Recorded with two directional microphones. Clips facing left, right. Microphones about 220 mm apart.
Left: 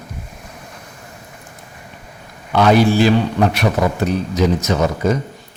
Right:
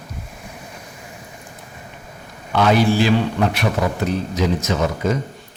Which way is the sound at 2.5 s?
40° left (ahead or behind).